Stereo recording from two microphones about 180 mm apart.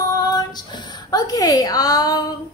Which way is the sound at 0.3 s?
25° left (ahead or behind).